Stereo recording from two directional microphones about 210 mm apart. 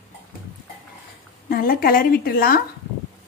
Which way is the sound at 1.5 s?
45° left (ahead or behind).